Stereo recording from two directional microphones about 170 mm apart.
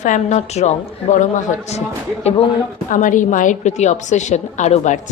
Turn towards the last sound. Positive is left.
turn(degrees=45)  # may be behind; listen again after turning